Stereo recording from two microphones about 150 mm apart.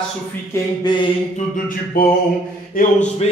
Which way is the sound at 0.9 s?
30° left (ahead or behind).